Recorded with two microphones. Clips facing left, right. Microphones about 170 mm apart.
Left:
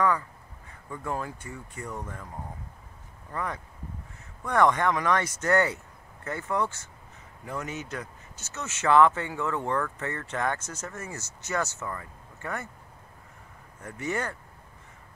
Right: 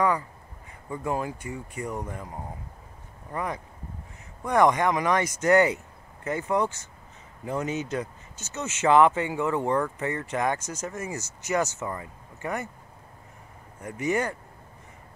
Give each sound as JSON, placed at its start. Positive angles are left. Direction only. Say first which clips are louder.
{"t": 0.8, "sound": "speech", "louder": "right 4 dB", "side_deg": -15}
{"t": 3.3, "sound": "speech", "louder": "right 2 dB", "side_deg": -15}
{"t": 13.8, "sound": "speech", "louder": "right 5 dB", "side_deg": -15}